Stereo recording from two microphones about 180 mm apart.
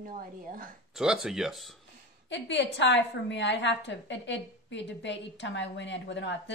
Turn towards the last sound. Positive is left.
turn(degrees=80)